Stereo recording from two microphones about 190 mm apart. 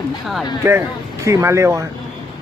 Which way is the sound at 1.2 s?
15° right (ahead or behind).